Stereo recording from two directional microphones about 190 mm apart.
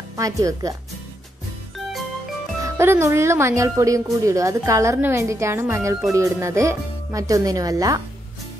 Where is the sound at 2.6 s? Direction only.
15° right (ahead or behind).